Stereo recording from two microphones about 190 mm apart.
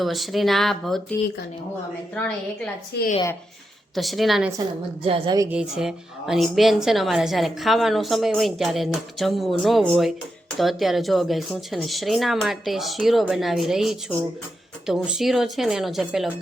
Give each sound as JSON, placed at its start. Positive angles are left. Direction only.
{"t": 0.0, "sound": "a woman's voice", "side_deg": 0}
{"t": 2.1, "sound": "a woman's voice", "side_deg": 5}
{"t": 2.9, "sound": "speech", "side_deg": 60}
{"t": 3.9, "sound": "a woman's voice", "side_deg": 0}
{"t": 5.0, "sound": "a woman's voice", "side_deg": -25}
{"t": 5.5, "sound": "a woman's voice", "side_deg": -5}